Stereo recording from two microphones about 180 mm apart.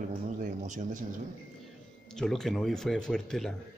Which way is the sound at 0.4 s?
45° right (ahead or behind).